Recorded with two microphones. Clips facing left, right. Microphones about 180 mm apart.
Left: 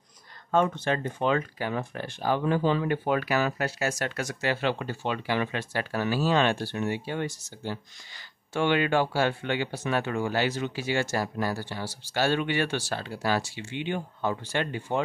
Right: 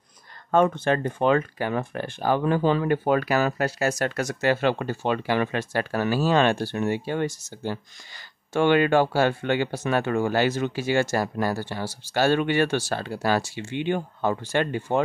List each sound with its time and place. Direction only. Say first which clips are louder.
0.5 s speech: right 4 dB; 55° right (ahead or behind)